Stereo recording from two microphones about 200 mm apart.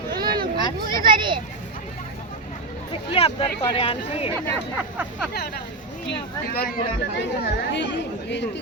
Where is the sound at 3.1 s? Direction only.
30° left (ahead or behind).